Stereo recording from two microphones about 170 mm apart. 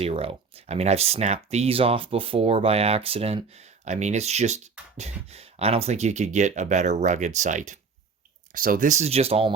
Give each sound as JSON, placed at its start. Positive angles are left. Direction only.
{"t": 0.0, "sound": "speech", "side_deg": -35}